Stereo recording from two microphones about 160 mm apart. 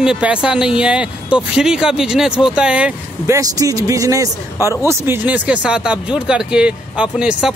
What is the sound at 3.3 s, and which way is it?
Speech, 20° right (ahead or behind).